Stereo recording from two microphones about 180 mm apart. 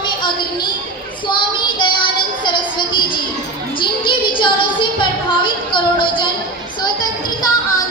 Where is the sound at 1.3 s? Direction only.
25° left (ahead or behind).